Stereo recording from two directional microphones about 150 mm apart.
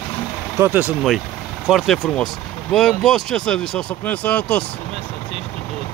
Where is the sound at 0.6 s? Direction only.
15° right (ahead or behind).